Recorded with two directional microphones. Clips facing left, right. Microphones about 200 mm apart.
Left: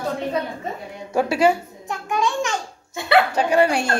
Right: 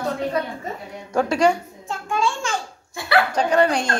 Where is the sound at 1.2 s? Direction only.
5° left (ahead or behind).